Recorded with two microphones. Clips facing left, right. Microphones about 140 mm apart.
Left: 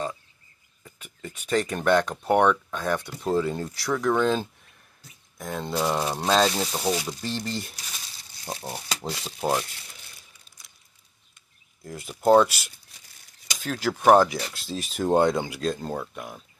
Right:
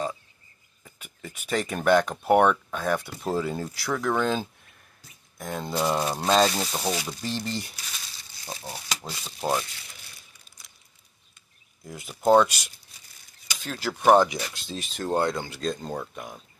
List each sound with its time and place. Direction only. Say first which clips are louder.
0.8 s speech: left 2 dB; 10° right (ahead or behind)
8.6 s speech: left 2 dB; 20° left (ahead or behind)
9.4 s speech: left 1 dB; 5° left (ahead or behind)
11.8 s speech: left 1 dB; centre (ahead or behind)
13.9 s speech: left 1 dB; 5° left (ahead or behind)
15.0 s speech: left 5 dB; 20° left (ahead or behind)
15.5 s speech: left 2 dB; 5° left (ahead or behind)